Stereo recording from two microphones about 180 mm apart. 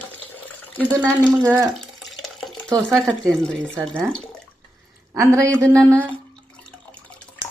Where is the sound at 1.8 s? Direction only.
Centre (ahead or behind).